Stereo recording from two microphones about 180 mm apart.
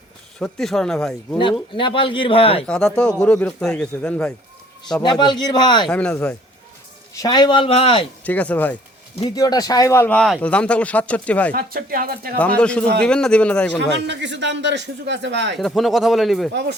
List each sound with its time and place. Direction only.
0.3 s speech: 5° left (ahead or behind)
1.7 s a man's voice: 30° left (ahead or behind)
2.6 s speech: 5° left (ahead or behind)
5.0 s a man's voice: 25° left (ahead or behind)
5.9 s speech: 10° left (ahead or behind)
7.1 s a man's voice: 20° left (ahead or behind)
8.2 s speech: 10° left (ahead or behind)
9.3 s speech: 20° left (ahead or behind)
11.5 s speech: 55° right (ahead or behind)
12.4 s speech: 5° left (ahead or behind)
13.9 s speech: 80° right
15.5 s speech: centre (ahead or behind)